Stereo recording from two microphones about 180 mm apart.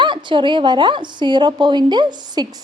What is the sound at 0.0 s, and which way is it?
A woman's voice, 25° right (ahead or behind).